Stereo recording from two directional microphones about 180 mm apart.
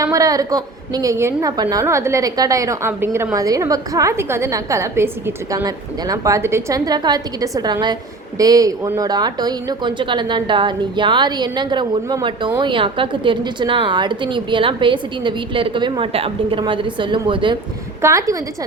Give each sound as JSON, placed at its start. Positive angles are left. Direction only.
{"t": 0.0, "sound": "a woman's voice", "side_deg": -20}
{"t": 18.0, "sound": "a woman's voice", "side_deg": -15}